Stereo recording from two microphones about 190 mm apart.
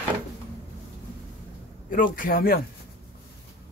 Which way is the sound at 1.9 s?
45° left (ahead or behind).